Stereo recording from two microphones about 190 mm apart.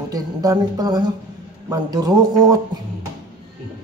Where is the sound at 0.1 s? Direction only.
20° right (ahead or behind).